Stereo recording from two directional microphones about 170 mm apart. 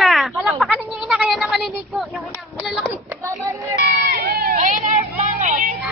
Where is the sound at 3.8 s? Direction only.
65° right (ahead or behind); by 5.7 s 50° right (ahead or behind).